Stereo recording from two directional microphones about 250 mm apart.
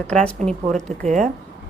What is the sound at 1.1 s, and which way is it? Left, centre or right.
Speech, right.